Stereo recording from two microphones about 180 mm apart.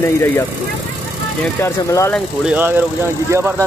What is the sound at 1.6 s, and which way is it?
Speech, 15° left (ahead or behind).